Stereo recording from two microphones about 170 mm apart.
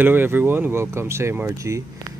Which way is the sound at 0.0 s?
10° right (ahead or behind).